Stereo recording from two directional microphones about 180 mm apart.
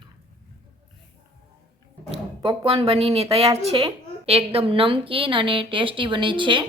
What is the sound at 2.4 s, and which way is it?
A woman's voice, 25° right (ahead or behind).